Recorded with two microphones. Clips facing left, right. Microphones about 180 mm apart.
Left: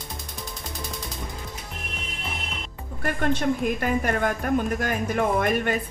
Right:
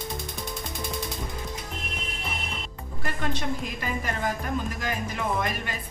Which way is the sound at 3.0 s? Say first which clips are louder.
Left 6 dB; 55° left (ahead or behind).